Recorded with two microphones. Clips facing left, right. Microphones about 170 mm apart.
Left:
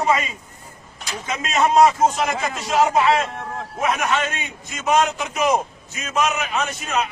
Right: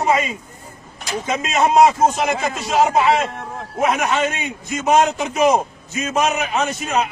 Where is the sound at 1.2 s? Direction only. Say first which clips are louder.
Right 2 dB; 25° right (ahead or behind).